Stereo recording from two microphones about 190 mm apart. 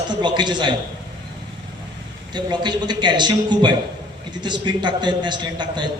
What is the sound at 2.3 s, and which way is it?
A man's voice, 25° right (ahead or behind).